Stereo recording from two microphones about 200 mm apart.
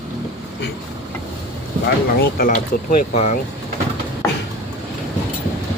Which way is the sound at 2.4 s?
40° left (ahead or behind).